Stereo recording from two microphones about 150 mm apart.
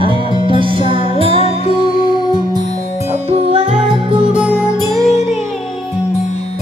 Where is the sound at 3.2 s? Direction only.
40° right (ahead or behind).